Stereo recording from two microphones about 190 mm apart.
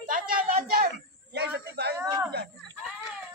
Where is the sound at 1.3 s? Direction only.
60° right (ahead or behind).